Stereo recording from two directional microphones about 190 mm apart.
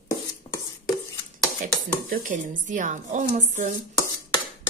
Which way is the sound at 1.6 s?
45° right (ahead or behind).